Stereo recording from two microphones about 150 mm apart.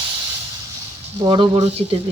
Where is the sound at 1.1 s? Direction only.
35° right (ahead or behind).